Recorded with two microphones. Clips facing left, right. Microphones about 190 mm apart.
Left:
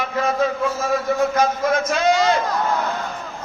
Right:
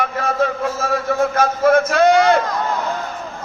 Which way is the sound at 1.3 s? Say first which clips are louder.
Right 4 dB; 55° right (ahead or behind).